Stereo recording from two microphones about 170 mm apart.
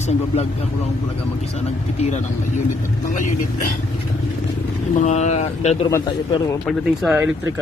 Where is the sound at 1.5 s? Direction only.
40° left (ahead or behind).